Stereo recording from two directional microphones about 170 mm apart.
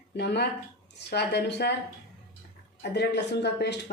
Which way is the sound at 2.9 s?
80° left.